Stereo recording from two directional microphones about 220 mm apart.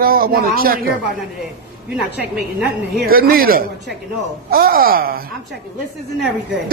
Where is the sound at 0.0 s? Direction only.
40° right (ahead or behind).